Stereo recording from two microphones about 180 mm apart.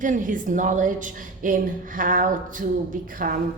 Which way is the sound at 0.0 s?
45° right (ahead or behind).